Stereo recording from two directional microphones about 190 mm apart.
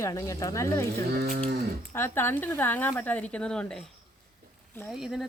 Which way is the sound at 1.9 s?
10° left (ahead or behind).